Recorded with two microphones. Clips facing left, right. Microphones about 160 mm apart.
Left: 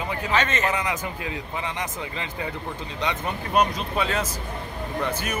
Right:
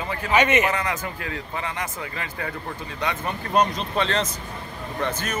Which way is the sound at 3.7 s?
5° left (ahead or behind).